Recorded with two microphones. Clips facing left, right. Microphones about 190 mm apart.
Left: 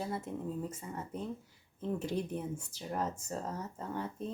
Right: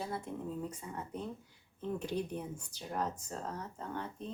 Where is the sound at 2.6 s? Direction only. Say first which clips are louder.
Left 1 dB; 10° left (ahead or behind).